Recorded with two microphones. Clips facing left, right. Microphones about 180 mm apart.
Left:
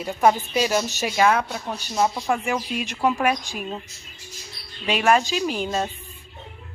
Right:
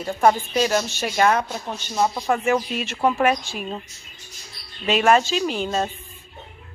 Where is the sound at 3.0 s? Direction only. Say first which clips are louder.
Right 2 dB; centre (ahead or behind).